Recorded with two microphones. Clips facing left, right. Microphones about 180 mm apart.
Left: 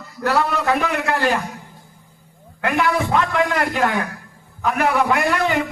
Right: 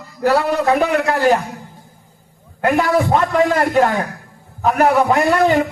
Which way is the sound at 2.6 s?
45° right (ahead or behind).